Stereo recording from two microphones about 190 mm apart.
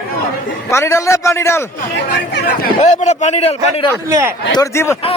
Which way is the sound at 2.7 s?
35° left (ahead or behind).